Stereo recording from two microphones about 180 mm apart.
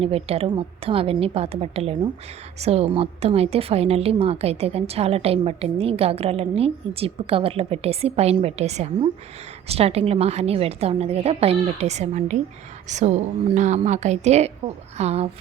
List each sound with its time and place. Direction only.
0.0 s a woman's voice: 35° right (ahead or behind)